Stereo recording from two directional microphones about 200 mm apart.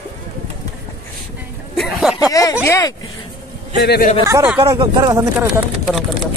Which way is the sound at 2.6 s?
15° left (ahead or behind).